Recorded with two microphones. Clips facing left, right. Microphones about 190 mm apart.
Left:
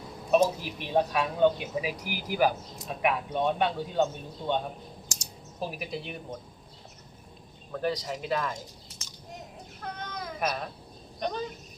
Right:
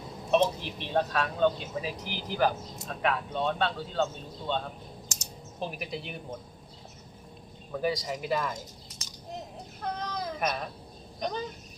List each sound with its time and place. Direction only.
0.3 s speech: 10° left (ahead or behind)
5.5 s speech: 5° left (ahead or behind)
7.7 s speech: 5° right (ahead or behind)
9.8 s a sound: 35° right (ahead or behind)
10.4 s speech: 5° left (ahead or behind)